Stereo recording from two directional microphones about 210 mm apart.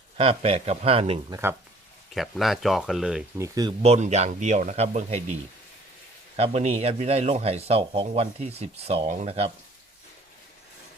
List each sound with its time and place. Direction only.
0.2 s a man's voice: 30° right (ahead or behind)
1.3 s speech: 10° right (ahead or behind)
2.1 s speech: centre (ahead or behind)
3.3 s speech: 15° right (ahead or behind)
3.8 s a man's voice: 30° right (ahead or behind)